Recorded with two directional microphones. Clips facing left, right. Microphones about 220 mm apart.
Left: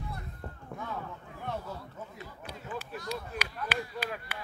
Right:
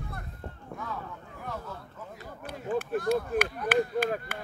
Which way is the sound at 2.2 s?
50° right (ahead or behind).